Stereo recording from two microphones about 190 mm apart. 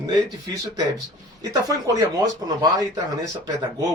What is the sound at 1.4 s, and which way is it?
Speech, 20° right (ahead or behind).